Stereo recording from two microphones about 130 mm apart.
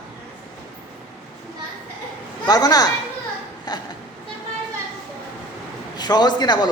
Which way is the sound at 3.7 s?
30° left (ahead or behind).